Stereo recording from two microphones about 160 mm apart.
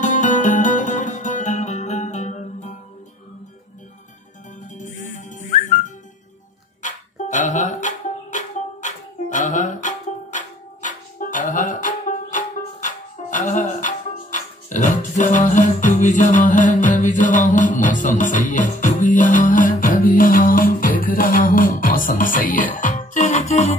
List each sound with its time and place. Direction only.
0.0 s music: 50° left (ahead or behind)
4.7 s whistling: 50° left (ahead or behind)
6.8 s music: 50° left (ahead or behind)